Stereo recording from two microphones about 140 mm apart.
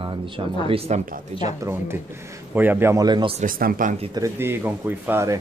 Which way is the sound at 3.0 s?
30° right (ahead or behind).